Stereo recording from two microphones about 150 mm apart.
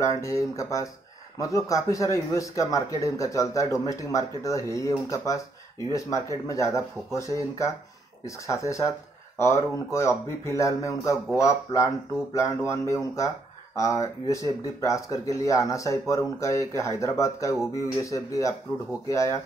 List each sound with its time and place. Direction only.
0.0 s speech: 20° left (ahead or behind)
10.4 s speech: 20° left (ahead or behind)